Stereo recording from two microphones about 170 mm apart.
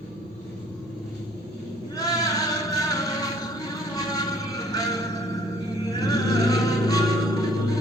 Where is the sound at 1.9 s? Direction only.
20° left (ahead or behind).